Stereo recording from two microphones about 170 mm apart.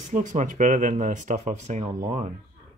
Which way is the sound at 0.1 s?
45° right (ahead or behind).